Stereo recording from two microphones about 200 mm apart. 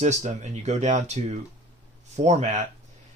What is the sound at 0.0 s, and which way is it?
Speech, 35° right (ahead or behind).